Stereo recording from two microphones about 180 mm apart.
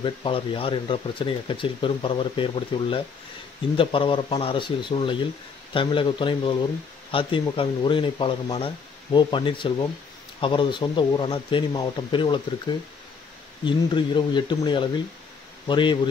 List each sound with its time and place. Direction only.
0.0 s speech: 30° left (ahead or behind)